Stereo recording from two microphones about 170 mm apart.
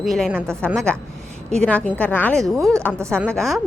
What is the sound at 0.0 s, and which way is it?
Speech, centre (ahead or behind).